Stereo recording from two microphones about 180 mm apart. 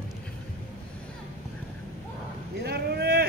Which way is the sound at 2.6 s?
65° right (ahead or behind).